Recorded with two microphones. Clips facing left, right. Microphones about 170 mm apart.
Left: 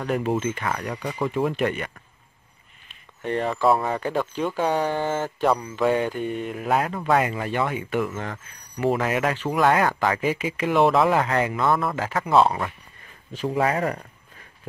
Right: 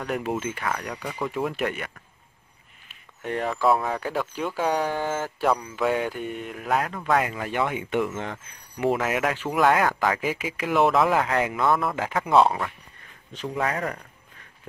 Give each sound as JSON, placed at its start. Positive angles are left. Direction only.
{"t": 0.0, "sound": "speech", "side_deg": -5}
{"t": 2.9, "sound": "a sound", "side_deg": -5}
{"t": 3.6, "sound": "speech", "side_deg": 0}
{"t": 7.5, "sound": "speech", "side_deg": -15}
{"t": 8.9, "sound": "speech", "side_deg": -5}
{"t": 11.9, "sound": "speech", "side_deg": -15}
{"t": 12.2, "sound": "speech", "side_deg": 0}
{"t": 13.6, "sound": "speech", "side_deg": 10}